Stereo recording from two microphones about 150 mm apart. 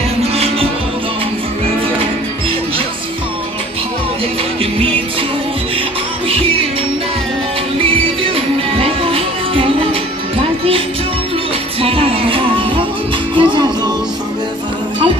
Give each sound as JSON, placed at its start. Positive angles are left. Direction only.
{"t": 0.2, "sound": "music", "side_deg": -40}
{"t": 8.7, "sound": "music", "side_deg": -40}
{"t": 11.8, "sound": "music", "side_deg": -40}